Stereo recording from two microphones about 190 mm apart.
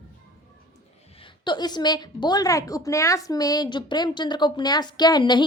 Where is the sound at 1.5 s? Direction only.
20° left (ahead or behind).